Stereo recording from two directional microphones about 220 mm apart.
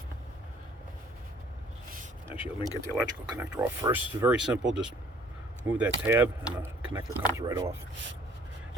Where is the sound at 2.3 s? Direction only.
25° left (ahead or behind).